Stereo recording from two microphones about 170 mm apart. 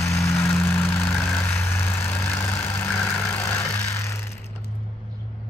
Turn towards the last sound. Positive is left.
turn(degrees=15)  # may be behind; listen again after turning